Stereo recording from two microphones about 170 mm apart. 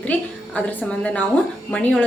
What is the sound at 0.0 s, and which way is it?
A woman's voice, 10° left (ahead or behind).